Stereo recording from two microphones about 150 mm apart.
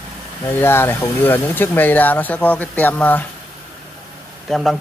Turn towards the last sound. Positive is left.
turn(degrees=0)  # may be behind; listen again after turning